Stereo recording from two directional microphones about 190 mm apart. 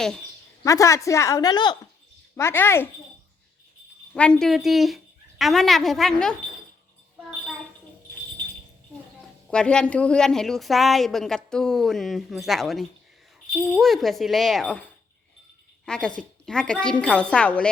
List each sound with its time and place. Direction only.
0.6 s speech: 15° left (ahead or behind)
2.3 s speech: 15° left (ahead or behind)
4.1 s a woman's voice: 5° left (ahead or behind)
9.5 s a woman's voice: 5° left (ahead or behind)
15.9 s a woman's voice: 5° left (ahead or behind)